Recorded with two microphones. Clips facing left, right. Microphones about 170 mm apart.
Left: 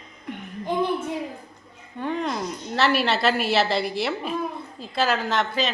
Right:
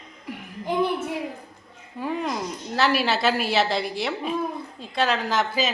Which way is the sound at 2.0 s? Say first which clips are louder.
Left 1 dB; 5° right (ahead or behind).